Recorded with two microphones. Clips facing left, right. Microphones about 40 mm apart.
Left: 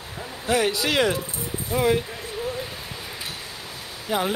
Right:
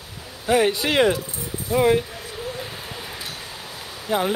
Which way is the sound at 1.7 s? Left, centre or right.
Centre.